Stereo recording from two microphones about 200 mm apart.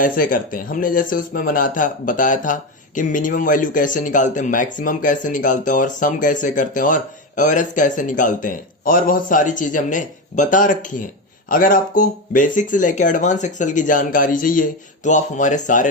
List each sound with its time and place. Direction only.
0.0 s speech: 45° left (ahead or behind)